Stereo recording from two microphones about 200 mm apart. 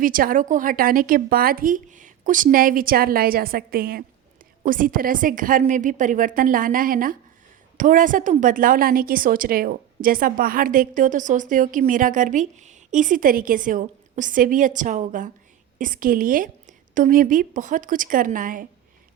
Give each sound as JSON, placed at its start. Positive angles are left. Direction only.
{"t": 0.0, "sound": "a woman's voice", "side_deg": -45}